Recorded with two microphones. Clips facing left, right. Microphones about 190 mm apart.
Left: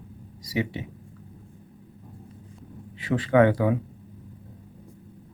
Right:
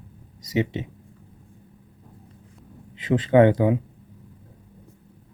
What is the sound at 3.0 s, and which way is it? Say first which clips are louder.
Speech: right 3 dB; 20° right (ahead or behind).